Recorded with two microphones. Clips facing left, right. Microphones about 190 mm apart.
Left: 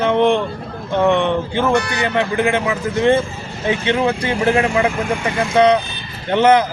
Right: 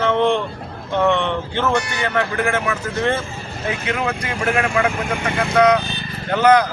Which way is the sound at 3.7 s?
30° left (ahead or behind).